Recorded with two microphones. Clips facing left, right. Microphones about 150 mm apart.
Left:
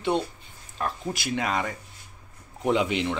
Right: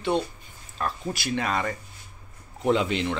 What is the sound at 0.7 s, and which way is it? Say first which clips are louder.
Speech: even; 20° left (ahead or behind).